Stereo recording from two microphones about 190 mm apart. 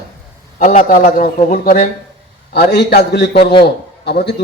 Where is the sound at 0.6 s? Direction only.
40° left (ahead or behind).